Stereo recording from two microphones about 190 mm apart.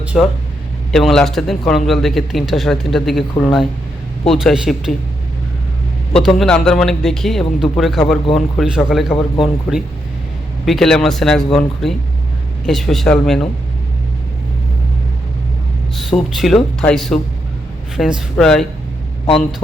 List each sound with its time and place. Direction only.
0.0 s a sound: 5° right (ahead or behind)
0.9 s speech: centre (ahead or behind)
6.1 s speech: centre (ahead or behind)
9.1 s speech: 25° left (ahead or behind)
10.7 s speech: centre (ahead or behind)
16.0 s speech: centre (ahead or behind)